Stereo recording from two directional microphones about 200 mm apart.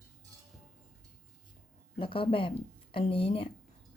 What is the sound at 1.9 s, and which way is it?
Speech, 25° left (ahead or behind).